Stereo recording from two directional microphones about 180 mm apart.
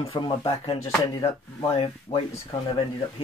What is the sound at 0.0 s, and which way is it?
Speech, 25° left (ahead or behind).